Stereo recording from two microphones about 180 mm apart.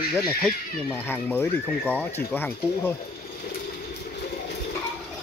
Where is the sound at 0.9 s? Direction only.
10° left (ahead or behind).